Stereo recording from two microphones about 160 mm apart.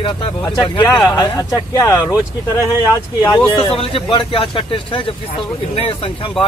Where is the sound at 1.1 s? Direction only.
25° left (ahead or behind).